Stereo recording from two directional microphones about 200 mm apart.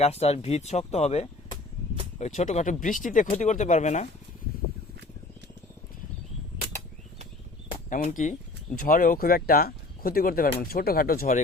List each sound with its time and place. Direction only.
0.0 s speech: 30° left (ahead or behind)
7.9 s speech: 40° left (ahead or behind)